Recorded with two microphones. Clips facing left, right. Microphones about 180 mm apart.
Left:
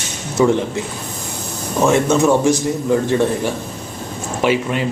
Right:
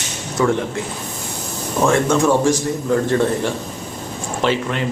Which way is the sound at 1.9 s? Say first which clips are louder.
Left 2 dB; 20° left (ahead or behind).